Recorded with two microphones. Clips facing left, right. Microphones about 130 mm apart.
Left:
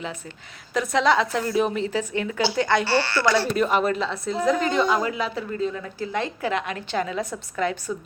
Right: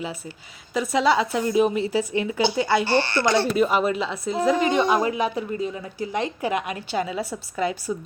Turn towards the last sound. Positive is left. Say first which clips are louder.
# even
turn(degrees=-10)  # may be behind; listen again after turning